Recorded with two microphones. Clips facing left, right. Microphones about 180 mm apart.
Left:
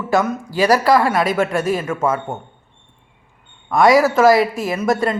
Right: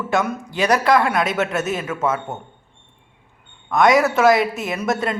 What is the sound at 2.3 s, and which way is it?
Speech, 45° left (ahead or behind).